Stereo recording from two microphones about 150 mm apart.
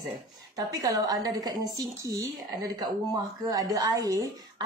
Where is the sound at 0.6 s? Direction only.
25° right (ahead or behind).